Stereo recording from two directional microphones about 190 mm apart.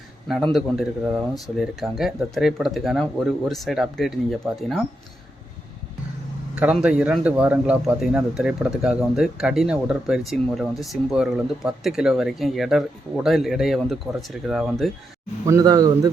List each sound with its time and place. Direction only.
0.3 s speech: centre (ahead or behind)
6.6 s speech: 5° right (ahead or behind)
15.4 s speech: 15° right (ahead or behind)